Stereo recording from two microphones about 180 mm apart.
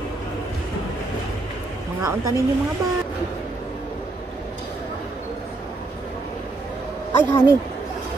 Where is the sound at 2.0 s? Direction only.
15° right (ahead or behind).